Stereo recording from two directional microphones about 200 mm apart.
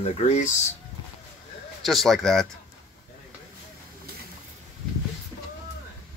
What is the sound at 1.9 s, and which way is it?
Speech, centre (ahead or behind).